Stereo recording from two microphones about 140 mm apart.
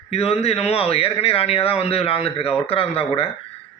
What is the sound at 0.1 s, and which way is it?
A man's voice, 45° left (ahead or behind).